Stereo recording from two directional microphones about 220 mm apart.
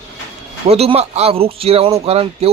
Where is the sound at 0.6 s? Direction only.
30° right (ahead or behind).